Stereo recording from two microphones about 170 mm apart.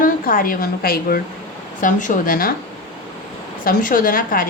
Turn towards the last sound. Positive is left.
turn(degrees=55)  # may be behind; listen again after turning